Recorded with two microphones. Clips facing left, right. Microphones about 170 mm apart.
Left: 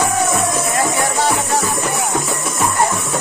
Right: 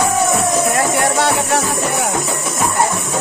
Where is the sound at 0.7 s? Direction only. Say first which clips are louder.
Right 2 dB; 70° right (ahead or behind).